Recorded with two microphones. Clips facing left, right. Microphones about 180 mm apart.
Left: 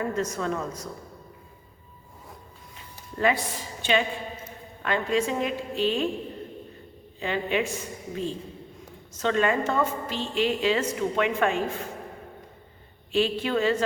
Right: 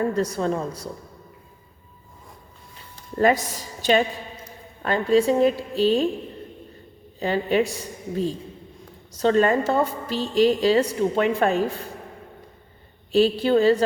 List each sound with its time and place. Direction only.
0.0 s a woman's voice: 35° right (ahead or behind)
2.7 s a sound: 40° right (ahead or behind)
4.8 s a woman's voice: 35° right (ahead or behind)
7.2 s a woman's voice: 40° right (ahead or behind)
13.1 s a woman's voice: 35° right (ahead or behind)